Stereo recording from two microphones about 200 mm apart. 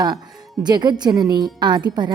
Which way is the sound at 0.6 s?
20° right (ahead or behind).